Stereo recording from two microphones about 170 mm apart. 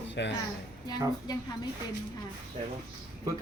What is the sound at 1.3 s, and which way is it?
Speech, 25° left (ahead or behind).